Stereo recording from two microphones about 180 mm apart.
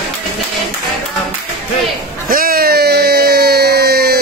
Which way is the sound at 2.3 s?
55° right (ahead or behind).